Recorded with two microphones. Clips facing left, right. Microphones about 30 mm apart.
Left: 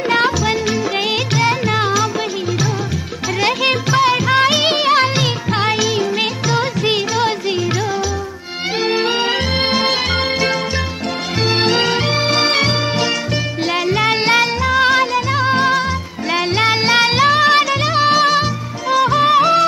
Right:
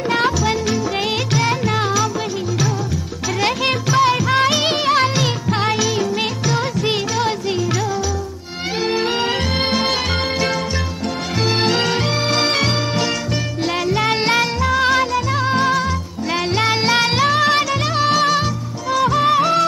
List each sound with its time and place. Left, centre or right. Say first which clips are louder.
0.1 s music: left 2 dB; centre
3.3 s music: left 3 dB; centre
8.8 s music: left 2 dB; left
11.4 s music: left 2 dB; centre
12.5 s organ: left 2 dB; centre
13.9 s music: left 3 dB; centre